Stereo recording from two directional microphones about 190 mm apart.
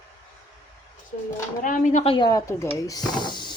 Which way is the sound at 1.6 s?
40° left (ahead or behind).